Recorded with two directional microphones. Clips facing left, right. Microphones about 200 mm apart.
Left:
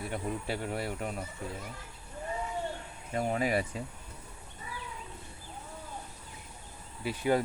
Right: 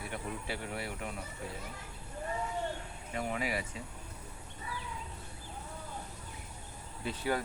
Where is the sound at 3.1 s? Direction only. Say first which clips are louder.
Left 6 dB; 40° left (ahead or behind).